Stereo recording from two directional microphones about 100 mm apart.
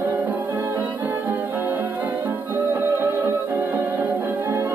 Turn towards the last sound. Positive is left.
turn(degrees=-20)  # may be behind; listen again after turning